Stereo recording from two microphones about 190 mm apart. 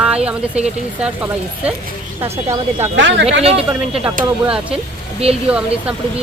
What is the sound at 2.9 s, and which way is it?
Speech, 75° right (ahead or behind).